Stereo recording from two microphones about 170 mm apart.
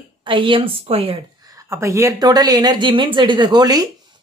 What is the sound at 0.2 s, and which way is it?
Speech, 30° right (ahead or behind).